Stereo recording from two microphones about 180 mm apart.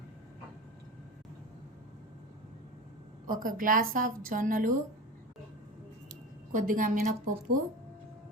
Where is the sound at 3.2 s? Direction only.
50° right (ahead or behind).